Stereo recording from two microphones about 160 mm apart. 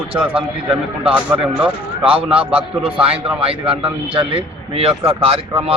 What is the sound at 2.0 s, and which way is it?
A man's voice, 35° right (ahead or behind).